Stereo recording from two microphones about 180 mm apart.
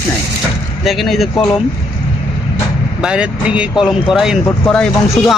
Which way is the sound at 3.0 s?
5° right (ahead or behind).